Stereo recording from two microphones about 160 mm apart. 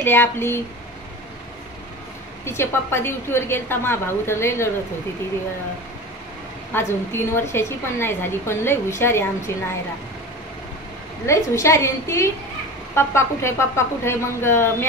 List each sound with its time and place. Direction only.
0.0 s a woman's voice: 15° left (ahead or behind)
2.4 s a woman's voice: 15° left (ahead or behind)
6.7 s a woman's voice: 15° left (ahead or behind)
11.2 s a woman's voice: 20° left (ahead or behind)